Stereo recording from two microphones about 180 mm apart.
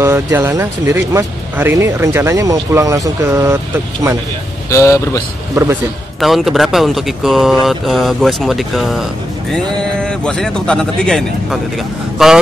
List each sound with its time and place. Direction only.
0.0 s speech: 15° right (ahead or behind)
4.6 s speech: 15° left (ahead or behind)
6.2 s speech: centre (ahead or behind)